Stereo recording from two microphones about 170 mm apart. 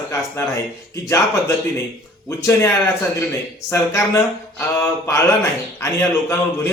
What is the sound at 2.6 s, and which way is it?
A man's voice, 15° left (ahead or behind).